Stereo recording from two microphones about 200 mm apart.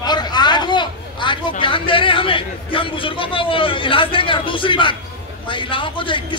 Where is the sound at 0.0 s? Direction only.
20° left (ahead or behind).